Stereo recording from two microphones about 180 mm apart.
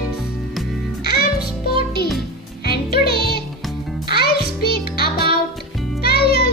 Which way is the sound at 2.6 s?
60° left (ahead or behind).